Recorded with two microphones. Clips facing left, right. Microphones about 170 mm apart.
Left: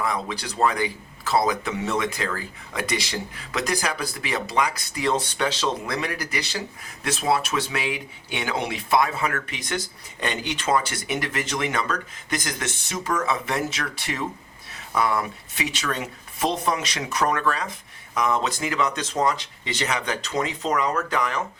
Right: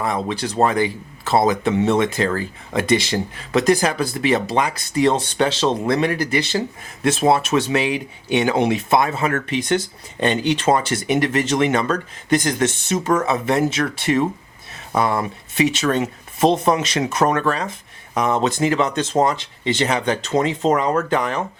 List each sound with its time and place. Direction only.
0.0 s speech: 25° right (ahead or behind)